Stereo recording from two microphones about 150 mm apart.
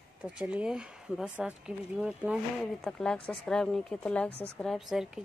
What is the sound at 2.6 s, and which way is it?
Speech, 5° left (ahead or behind).